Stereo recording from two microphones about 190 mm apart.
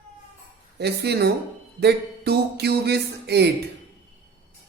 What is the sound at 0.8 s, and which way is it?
Speech, 60° right (ahead or behind).